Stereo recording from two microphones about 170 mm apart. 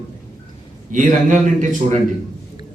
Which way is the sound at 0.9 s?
50° right (ahead or behind).